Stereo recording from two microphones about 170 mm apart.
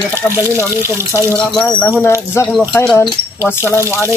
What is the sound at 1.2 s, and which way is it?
Speech, 5° left (ahead or behind).